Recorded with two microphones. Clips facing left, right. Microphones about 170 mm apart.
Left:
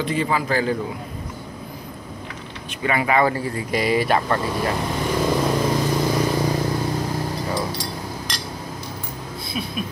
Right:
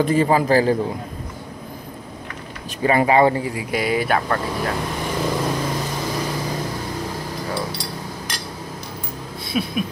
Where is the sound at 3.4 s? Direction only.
10° right (ahead or behind).